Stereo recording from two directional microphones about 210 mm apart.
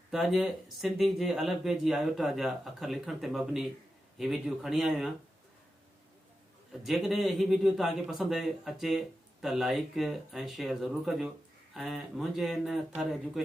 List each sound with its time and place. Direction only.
0.1 s speech: centre (ahead or behind)
6.8 s speech: centre (ahead or behind)